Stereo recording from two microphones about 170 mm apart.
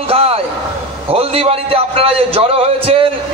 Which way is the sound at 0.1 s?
35° right (ahead or behind).